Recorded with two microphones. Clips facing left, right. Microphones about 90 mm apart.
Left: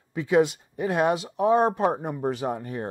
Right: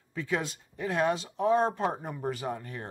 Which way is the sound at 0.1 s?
20° left (ahead or behind).